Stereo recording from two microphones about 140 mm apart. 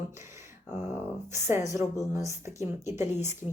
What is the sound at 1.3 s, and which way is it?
A woman's voice, 20° right (ahead or behind).